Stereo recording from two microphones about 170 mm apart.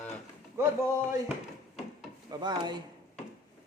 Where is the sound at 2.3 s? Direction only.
25° right (ahead or behind).